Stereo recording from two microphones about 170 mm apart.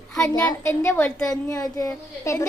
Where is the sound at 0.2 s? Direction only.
15° left (ahead or behind).